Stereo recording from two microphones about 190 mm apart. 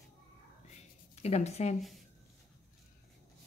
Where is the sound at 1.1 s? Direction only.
35° left (ahead or behind).